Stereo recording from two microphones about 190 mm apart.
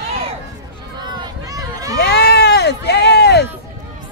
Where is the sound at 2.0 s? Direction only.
60° left (ahead or behind).